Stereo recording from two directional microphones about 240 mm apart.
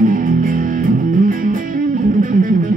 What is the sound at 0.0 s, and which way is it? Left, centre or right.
Music, right.